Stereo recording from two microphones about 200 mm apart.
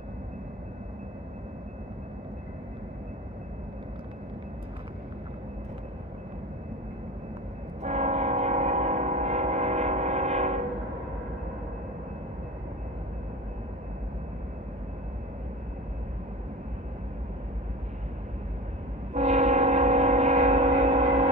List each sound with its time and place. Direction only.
7.8 s train: 35° right (ahead or behind)
19.1 s train: 35° right (ahead or behind)